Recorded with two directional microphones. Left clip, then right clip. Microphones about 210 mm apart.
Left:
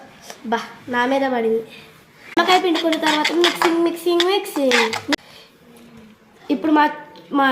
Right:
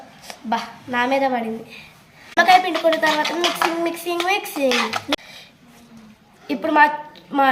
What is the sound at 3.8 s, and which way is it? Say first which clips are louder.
Speech: left 4 dB; 55° right (ahead or behind).